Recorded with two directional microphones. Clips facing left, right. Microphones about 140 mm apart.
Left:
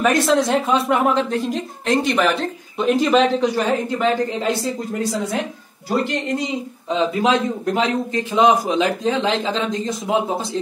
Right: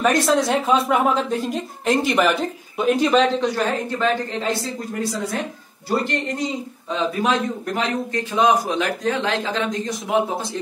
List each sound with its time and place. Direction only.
0.0 s a woman's voice: centre (ahead or behind)
6.0 s a man's voice: 15° left (ahead or behind)